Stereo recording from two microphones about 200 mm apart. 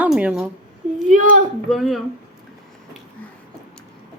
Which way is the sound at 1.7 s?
Centre (ahead or behind).